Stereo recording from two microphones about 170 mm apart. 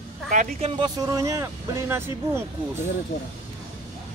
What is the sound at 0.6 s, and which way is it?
Speech, 30° right (ahead or behind).